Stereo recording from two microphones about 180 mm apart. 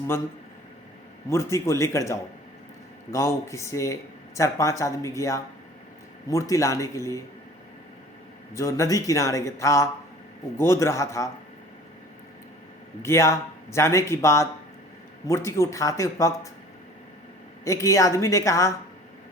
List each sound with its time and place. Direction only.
1.3 s speech: 15° left (ahead or behind)
8.5 s speech: 15° left (ahead or behind)
13.0 s speech: 15° left (ahead or behind)
17.7 s speech: 15° left (ahead or behind)